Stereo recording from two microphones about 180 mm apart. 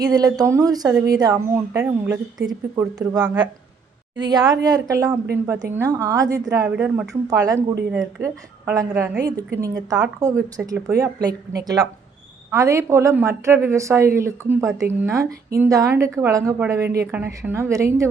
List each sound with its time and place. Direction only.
0.0 s a woman's voice: 20° right (ahead or behind)
7.1 s a woman's voice: 20° right (ahead or behind)